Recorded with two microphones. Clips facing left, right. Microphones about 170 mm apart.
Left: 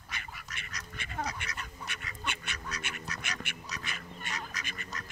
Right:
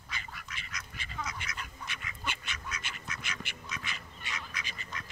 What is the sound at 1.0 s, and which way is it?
Duck, 60° left (ahead or behind).